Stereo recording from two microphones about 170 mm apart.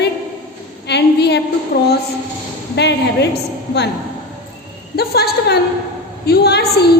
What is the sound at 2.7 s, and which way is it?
Speech, 90° left.